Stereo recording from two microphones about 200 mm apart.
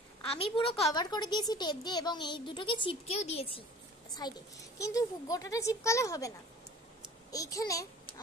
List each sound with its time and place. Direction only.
0.3 s a woman's voice: 30° left (ahead or behind)